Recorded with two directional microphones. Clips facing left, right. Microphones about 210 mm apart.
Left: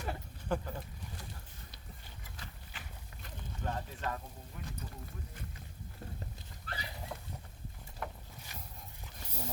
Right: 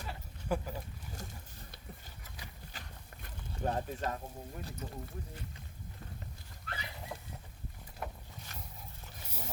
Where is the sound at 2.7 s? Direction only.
40° right (ahead or behind).